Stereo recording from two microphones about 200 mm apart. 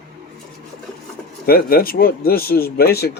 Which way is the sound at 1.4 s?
50° left (ahead or behind).